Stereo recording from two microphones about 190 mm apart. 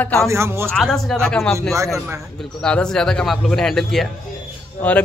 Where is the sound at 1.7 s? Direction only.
15° right (ahead or behind).